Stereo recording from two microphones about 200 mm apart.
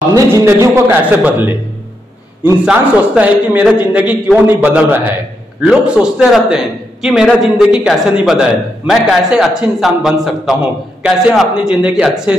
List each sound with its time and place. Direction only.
0.1 s a man's voice: 15° right (ahead or behind)